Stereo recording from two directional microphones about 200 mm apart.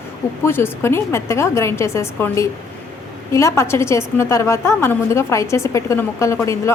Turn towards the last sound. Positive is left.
turn(degrees=15)  # may be behind; listen again after turning